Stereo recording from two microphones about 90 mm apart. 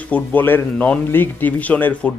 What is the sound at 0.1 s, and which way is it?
Speech, 20° left (ahead or behind).